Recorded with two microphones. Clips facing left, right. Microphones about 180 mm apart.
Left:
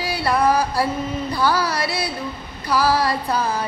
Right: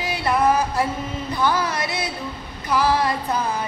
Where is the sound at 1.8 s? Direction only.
30° left (ahead or behind).